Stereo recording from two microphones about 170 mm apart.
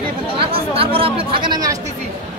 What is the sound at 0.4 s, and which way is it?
Chatter, 35° right (ahead or behind).